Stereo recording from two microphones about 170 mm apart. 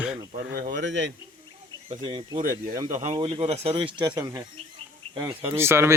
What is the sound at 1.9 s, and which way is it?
Speech, 35° right (ahead or behind).